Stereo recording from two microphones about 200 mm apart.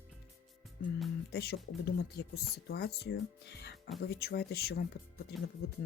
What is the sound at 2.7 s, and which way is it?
Speech, 55° left (ahead or behind).